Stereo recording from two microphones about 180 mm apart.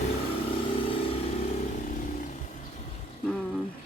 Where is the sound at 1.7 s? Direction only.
45° left (ahead or behind).